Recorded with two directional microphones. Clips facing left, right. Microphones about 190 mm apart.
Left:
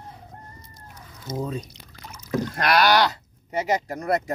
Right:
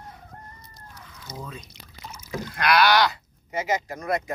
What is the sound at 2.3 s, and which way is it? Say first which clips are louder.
Rowboat: left 2 dB; 40° left (ahead or behind).